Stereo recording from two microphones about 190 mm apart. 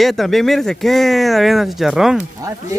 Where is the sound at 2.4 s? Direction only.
15° right (ahead or behind).